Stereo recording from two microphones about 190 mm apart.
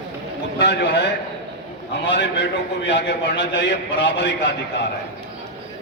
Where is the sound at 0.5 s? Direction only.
65° left (ahead or behind).